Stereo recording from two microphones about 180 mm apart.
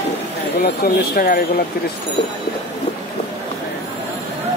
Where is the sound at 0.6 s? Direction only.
60° left (ahead or behind).